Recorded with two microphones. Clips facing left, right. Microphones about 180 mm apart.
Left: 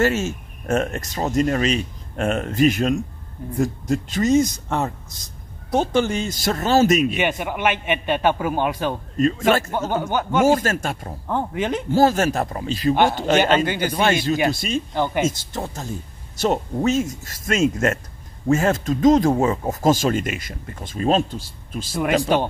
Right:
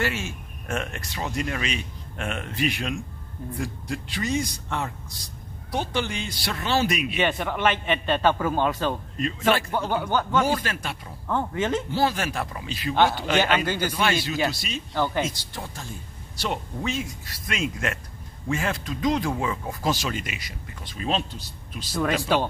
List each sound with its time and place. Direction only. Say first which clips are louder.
0.0 s speech: left 8 dB; 45° left (ahead or behind)
7.2 s a man's voice: left 2 dB; 15° left (ahead or behind)
9.1 s speech: left 7 dB; 45° left (ahead or behind)
10.0 s speech: left 2 dB; 20° left (ahead or behind)
10.4 s speech: left 8 dB; 45° left (ahead or behind)
11.2 s a man's voice: left 2 dB; 15° left (ahead or behind)
11.9 s speech: left 8 dB; 45° left (ahead or behind)
15.0 s a man's voice: left 1 dB; 20° left (ahead or behind)
15.2 s speech: left 9 dB; 45° left (ahead or behind)